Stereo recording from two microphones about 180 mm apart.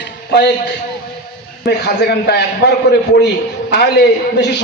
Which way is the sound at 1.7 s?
65° left (ahead or behind).